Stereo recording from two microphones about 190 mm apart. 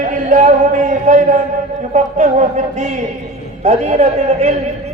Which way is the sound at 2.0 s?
40° right (ahead or behind).